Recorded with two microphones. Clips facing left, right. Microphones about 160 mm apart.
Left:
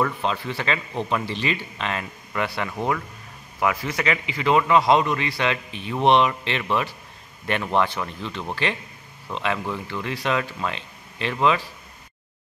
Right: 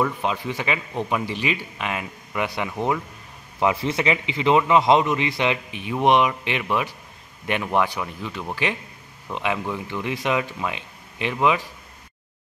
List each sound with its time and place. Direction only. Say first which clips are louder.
0.0 s a man's voice: right 1 dB; 15° right (ahead or behind)